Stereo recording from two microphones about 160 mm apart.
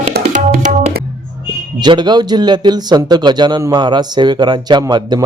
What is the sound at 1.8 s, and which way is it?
A man's voice, 25° right (ahead or behind).